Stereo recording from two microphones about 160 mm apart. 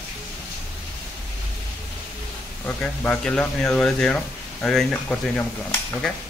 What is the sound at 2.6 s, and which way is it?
Speech, 10° left (ahead or behind).